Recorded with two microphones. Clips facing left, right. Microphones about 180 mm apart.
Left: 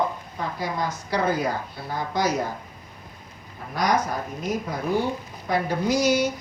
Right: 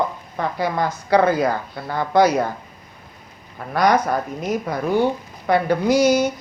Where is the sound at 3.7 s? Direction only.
65° right (ahead or behind).